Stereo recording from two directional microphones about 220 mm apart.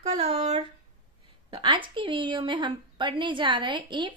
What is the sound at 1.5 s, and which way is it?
Speech, 20° right (ahead or behind).